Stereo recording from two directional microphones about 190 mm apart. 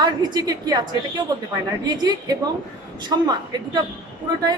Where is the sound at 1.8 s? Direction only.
20° right (ahead or behind).